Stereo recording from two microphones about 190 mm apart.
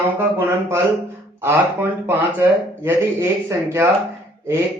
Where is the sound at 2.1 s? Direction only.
10° right (ahead or behind).